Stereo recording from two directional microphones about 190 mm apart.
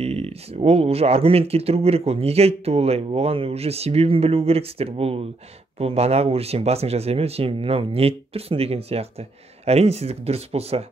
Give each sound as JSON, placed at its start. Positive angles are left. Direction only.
{"t": 0.0, "sound": "speech", "side_deg": -35}